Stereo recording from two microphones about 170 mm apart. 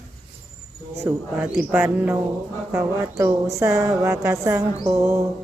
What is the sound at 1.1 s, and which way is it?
A woman's voice, 15° right (ahead or behind).